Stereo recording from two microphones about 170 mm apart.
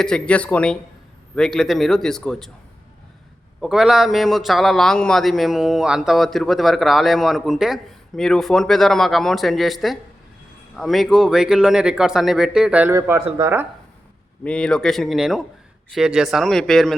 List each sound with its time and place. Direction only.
0.0 s a man's voice: 5° left (ahead or behind)
3.6 s a man's voice: centre (ahead or behind)
13.0 s speech: 20° right (ahead or behind)
14.4 s a man's voice: 5° left (ahead or behind)